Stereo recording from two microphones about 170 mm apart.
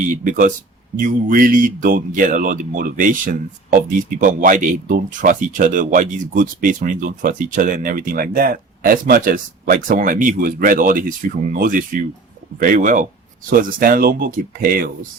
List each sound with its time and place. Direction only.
0.3 s speech: 50° right (ahead or behind)